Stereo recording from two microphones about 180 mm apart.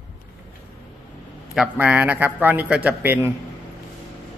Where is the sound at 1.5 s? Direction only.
10° right (ahead or behind).